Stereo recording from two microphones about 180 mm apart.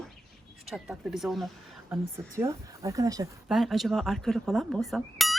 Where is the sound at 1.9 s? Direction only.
15° right (ahead or behind).